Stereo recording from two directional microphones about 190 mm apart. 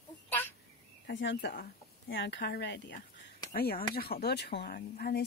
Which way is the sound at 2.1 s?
65° left (ahead or behind).